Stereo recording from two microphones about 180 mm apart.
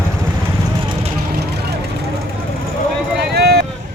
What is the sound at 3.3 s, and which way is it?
Vehicle, 65° right (ahead or behind).